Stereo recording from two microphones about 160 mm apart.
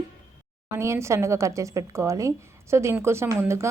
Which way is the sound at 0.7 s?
15° right (ahead or behind).